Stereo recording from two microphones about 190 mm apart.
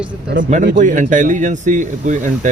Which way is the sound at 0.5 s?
45° right (ahead or behind).